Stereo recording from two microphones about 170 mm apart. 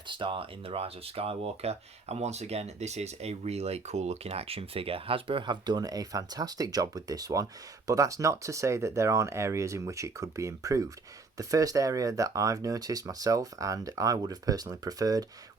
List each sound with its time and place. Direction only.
0.1 s speech: 30° right (ahead or behind)